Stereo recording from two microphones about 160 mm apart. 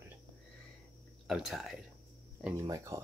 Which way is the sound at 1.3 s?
Centre (ahead or behind).